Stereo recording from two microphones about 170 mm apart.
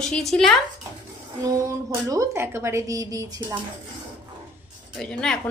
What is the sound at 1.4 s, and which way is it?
A woman's voice, 20° right (ahead or behind).